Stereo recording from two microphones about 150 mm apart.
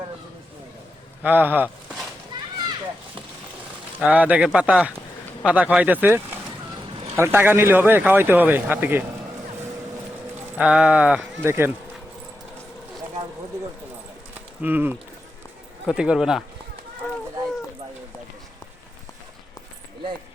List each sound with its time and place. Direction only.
1.2 s speech: 10° right (ahead or behind)
2.3 s a sound: 30° right (ahead or behind)
4.0 s speech: 10° right (ahead or behind)
10.6 s speech: 5° right (ahead or behind)
14.6 s speech: 10° right (ahead or behind)